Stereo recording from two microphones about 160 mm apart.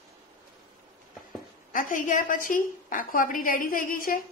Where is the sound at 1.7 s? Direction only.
55° left (ahead or behind).